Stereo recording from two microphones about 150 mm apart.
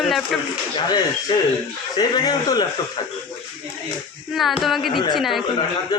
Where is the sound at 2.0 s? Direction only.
25° left (ahead or behind).